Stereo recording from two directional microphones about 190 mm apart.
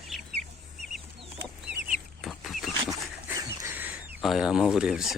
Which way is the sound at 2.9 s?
15° right (ahead or behind).